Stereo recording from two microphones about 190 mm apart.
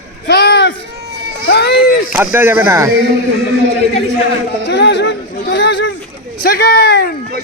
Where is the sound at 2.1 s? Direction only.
10° right (ahead or behind).